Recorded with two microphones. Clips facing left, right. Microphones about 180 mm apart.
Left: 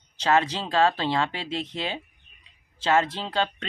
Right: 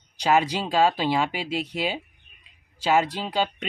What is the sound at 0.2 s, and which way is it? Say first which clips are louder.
Speech: right 1 dB; 10° right (ahead or behind).